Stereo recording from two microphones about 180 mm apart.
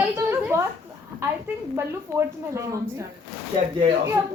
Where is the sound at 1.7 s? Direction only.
15° right (ahead or behind).